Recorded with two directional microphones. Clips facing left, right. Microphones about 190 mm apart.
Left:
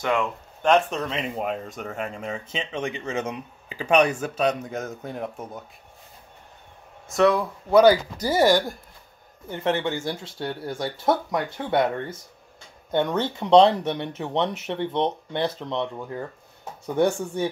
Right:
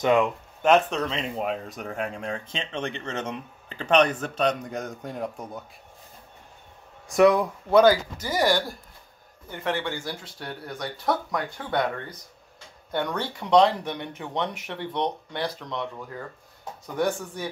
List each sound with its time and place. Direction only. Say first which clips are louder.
0.0 s speech: right 4 dB; 20° right (ahead or behind)
0.6 s speech: even; 5° right (ahead or behind)
7.2 s speech: right 2 dB; 15° right (ahead or behind)
8.2 s speech: left 5 dB; 30° left (ahead or behind)
8.5 s speech: left 4 dB; 15° left (ahead or behind)